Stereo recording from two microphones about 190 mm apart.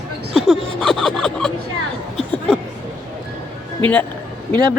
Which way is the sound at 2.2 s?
Centre (ahead or behind).